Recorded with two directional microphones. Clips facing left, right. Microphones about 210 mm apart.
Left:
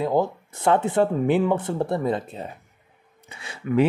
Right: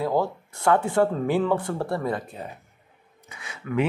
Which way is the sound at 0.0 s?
20° left (ahead or behind).